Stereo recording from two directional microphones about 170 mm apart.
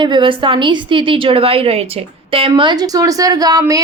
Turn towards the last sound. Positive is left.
turn(degrees=-20)  # may be behind; listen again after turning